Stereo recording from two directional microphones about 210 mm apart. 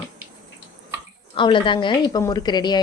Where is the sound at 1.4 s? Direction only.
25° left (ahead or behind).